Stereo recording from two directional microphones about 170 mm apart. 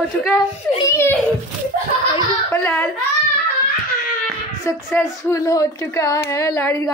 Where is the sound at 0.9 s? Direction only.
15° left (ahead or behind).